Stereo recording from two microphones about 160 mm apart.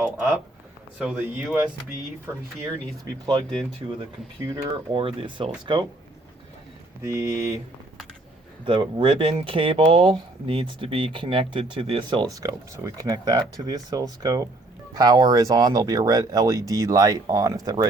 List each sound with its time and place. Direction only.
0.0 s a sound: 5° right (ahead or behind)
0.9 s speech: 5° right (ahead or behind)
3.0 s speech: 25° right (ahead or behind)
4.9 s speech: 30° right (ahead or behind)
7.0 s speech: 20° right (ahead or behind)
8.6 s speech: 30° right (ahead or behind)